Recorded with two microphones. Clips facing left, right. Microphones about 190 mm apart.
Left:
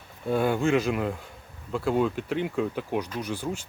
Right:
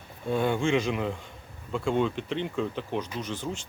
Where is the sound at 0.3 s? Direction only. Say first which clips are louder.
Left 2 dB; 5° left (ahead or behind).